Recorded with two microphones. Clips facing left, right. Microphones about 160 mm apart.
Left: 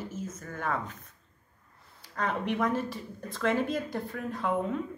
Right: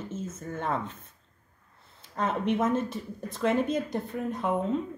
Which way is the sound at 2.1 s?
20° right (ahead or behind).